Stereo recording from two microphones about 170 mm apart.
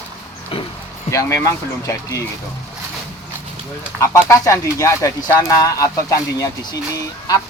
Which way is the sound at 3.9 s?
15° left (ahead or behind).